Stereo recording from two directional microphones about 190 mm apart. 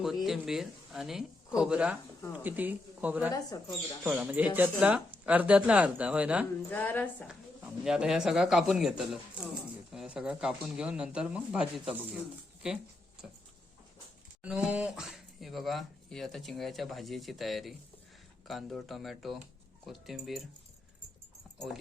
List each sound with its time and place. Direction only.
0.3 s speech: centre (ahead or behind)
3.5 s speech: 20° left (ahead or behind)
4.0 s speech: 10° right (ahead or behind)
6.7 s a woman's voice: 10° left (ahead or behind)
7.3 s speech: 5° right (ahead or behind)
14.4 s speech: 5° right (ahead or behind)